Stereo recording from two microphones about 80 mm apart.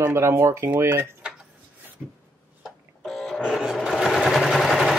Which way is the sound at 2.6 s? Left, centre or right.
Centre.